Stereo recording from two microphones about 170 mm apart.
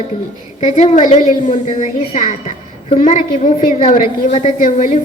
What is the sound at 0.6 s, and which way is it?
A woman's voice, 40° left (ahead or behind).